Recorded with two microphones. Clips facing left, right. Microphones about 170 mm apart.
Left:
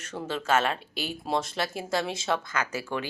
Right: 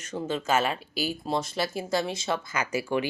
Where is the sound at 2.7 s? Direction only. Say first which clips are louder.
Right 5 dB; 15° right (ahead or behind).